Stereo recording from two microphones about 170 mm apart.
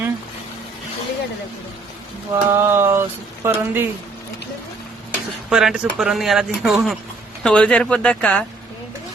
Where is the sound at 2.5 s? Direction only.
15° right (ahead or behind).